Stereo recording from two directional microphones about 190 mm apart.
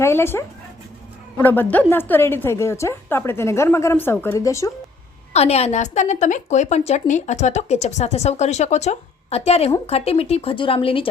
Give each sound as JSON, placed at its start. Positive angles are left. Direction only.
{"t": 0.0, "sound": "a woman's voice", "side_deg": 10}
{"t": 5.3, "sound": "a woman's voice", "side_deg": 35}